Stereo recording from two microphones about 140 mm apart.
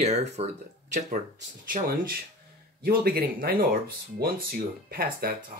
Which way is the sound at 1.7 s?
90° right.